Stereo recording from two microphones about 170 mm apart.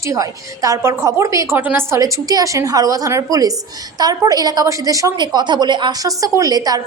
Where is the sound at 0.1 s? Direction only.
20° right (ahead or behind).